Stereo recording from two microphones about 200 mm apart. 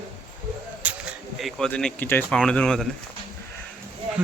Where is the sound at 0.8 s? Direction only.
5° right (ahead or behind).